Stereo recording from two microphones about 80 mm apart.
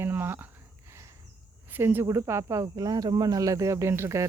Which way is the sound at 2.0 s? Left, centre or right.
Right.